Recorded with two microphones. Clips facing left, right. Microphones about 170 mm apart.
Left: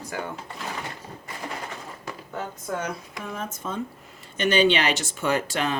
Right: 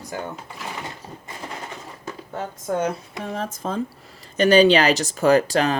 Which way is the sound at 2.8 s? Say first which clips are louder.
Right 6 dB; 30° right (ahead or behind).